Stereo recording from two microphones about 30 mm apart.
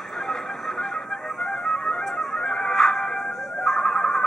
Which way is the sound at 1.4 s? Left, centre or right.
Centre.